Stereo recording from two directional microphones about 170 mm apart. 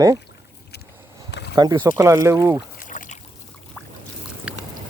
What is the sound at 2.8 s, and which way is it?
Trickle, 50° left (ahead or behind).